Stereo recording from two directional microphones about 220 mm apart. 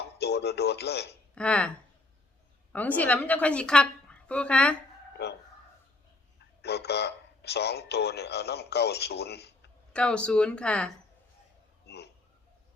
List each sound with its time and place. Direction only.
0.2 s speech: 50° left (ahead or behind)
1.4 s a woman's voice: 5° left (ahead or behind)
2.7 s a woman's voice: 5° left (ahead or behind)
5.2 s speech: 50° left (ahead or behind)
6.4 s speech: 50° left (ahead or behind)
9.9 s a woman's voice: 5° left (ahead or behind)
11.9 s a sound: 50° left (ahead or behind)